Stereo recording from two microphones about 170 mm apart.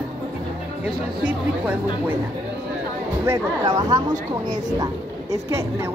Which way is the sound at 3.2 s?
20° right (ahead or behind).